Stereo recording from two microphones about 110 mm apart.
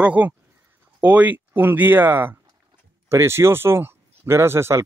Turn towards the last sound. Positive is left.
turn(degrees=-25)  # may be behind; listen again after turning